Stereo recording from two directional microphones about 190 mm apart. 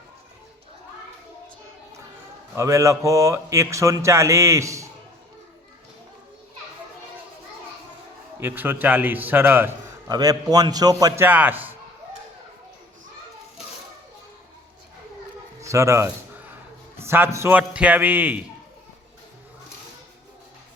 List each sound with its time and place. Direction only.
2.6 s a man's voice: 15° right (ahead or behind)
8.4 s a man's voice: 10° right (ahead or behind)
11.3 s a man's voice: 10° right (ahead or behind)
15.6 s a man's voice: 15° right (ahead or behind)